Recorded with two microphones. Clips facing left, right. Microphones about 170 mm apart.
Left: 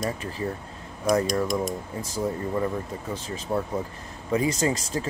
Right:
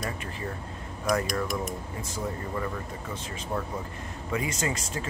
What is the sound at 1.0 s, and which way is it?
Speech, 20° left (ahead or behind).